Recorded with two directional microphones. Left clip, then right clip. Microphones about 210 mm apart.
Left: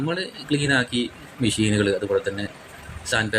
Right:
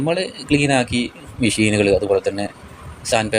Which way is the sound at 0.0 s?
20° right (ahead or behind).